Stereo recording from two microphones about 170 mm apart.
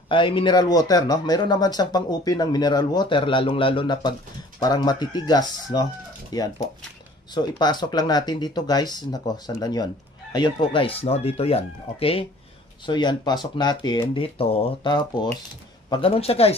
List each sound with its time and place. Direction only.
0.1 s speech: 30° left (ahead or behind)